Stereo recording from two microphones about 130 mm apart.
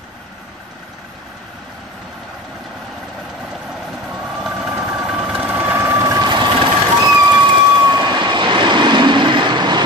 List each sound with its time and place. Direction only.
4.4 s vehicle: 5° right (ahead or behind)
4.6 s vehicle: 15° right (ahead or behind); by 9.8 s 35° right (ahead or behind)